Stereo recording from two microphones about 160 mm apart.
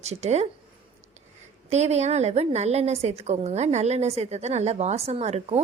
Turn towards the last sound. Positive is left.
turn(degrees=-40)  # may be behind; listen again after turning